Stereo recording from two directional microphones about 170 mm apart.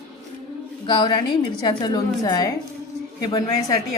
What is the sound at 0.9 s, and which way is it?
A woman's voice, 30° left (ahead or behind).